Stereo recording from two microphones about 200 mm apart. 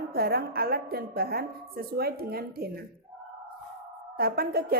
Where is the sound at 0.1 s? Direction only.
50° right (ahead or behind).